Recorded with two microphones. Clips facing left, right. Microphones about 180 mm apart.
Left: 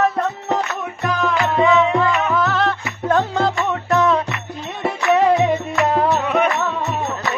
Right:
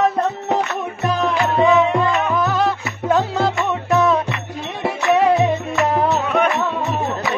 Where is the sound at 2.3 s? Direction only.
15° right (ahead or behind).